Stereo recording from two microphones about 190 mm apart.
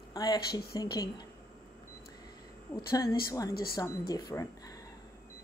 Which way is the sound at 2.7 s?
15° left (ahead or behind).